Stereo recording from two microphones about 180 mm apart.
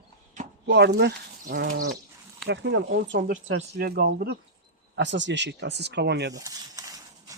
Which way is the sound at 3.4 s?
60° right (ahead or behind).